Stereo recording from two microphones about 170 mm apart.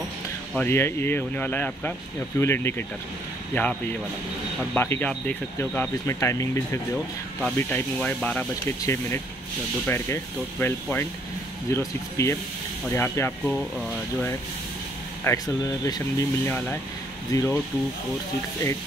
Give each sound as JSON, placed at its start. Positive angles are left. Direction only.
{"t": 0.6, "sound": "speech", "side_deg": 15}
{"t": 4.7, "sound": "speech", "side_deg": 15}
{"t": 15.2, "sound": "speech", "side_deg": 20}